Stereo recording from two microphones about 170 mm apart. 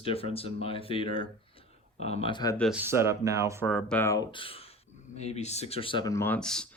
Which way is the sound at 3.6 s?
Centre (ahead or behind).